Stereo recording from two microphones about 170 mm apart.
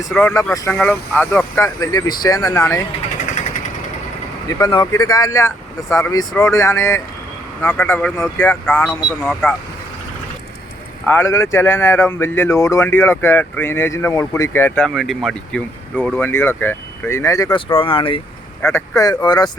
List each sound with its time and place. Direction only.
0.0 s speech: 5° left (ahead or behind)
4.4 s speech: 20° left (ahead or behind); by 9.6 s 5° left (ahead or behind)
11.0 s speech: 10° left (ahead or behind)
14.8 s speech: centre (ahead or behind); by 18.2 s 30° left (ahead or behind)
18.6 s speech: 15° left (ahead or behind)